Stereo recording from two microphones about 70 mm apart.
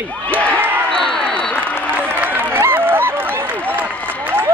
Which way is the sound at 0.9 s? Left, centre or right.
Centre.